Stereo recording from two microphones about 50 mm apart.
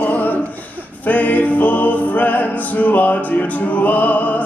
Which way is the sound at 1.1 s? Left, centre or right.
Left.